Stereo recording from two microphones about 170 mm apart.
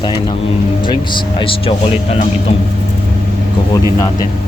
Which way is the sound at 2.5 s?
35° left (ahead or behind).